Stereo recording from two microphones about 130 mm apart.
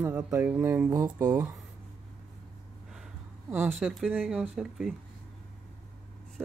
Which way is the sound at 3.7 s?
5° right (ahead or behind).